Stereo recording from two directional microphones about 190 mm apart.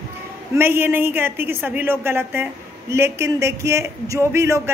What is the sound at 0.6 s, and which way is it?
A woman's voice, 10° right (ahead or behind).